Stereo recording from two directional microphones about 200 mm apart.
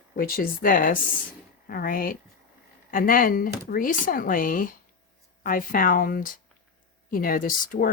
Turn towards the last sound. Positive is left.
turn(degrees=45)  # may be behind; listen again after turning